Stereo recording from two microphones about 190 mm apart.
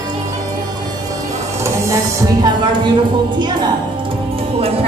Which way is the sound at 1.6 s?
15° right (ahead or behind).